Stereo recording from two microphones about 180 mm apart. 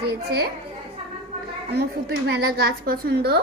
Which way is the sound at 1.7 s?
65° right (ahead or behind).